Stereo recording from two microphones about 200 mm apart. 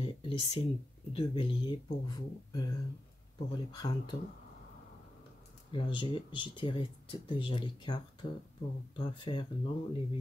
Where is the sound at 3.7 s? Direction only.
20° left (ahead or behind).